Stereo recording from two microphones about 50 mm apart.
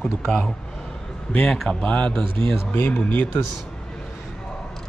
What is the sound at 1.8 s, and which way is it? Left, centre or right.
Speech, left.